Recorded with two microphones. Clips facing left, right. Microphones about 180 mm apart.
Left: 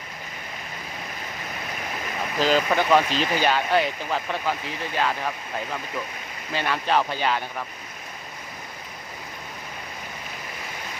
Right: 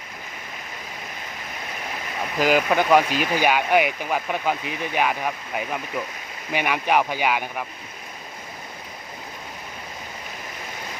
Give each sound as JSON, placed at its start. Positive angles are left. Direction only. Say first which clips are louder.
{"t": 2.4, "sound": "speech", "louder": "right 2 dB", "side_deg": -10}